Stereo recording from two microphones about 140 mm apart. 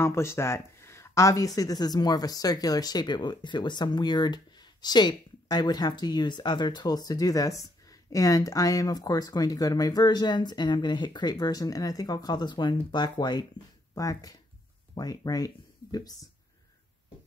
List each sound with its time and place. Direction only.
0.0 s speech: 20° left (ahead or behind)